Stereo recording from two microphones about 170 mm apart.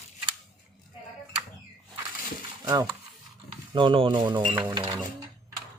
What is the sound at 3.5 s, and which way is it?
Speech, 30° right (ahead or behind).